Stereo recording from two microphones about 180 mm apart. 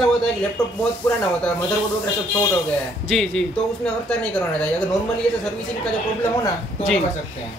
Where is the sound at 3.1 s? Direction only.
Centre (ahead or behind).